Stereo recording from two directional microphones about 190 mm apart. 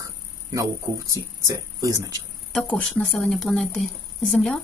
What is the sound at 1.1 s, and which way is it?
Speech, 15° right (ahead or behind).